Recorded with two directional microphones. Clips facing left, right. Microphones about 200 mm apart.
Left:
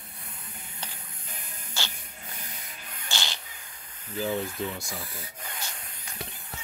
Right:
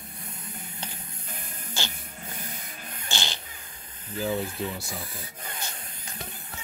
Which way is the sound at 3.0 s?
20° right (ahead or behind).